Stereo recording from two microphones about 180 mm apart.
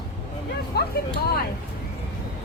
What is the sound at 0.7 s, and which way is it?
Speech, 60° left (ahead or behind).